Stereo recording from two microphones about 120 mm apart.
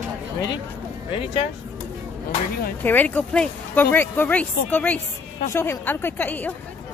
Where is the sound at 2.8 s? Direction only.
15° left (ahead or behind).